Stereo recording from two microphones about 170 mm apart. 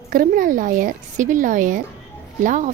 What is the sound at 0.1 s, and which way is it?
A woman's voice, 55° right (ahead or behind).